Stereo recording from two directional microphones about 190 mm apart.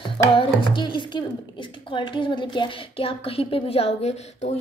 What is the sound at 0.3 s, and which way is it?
Speech, 30° left (ahead or behind).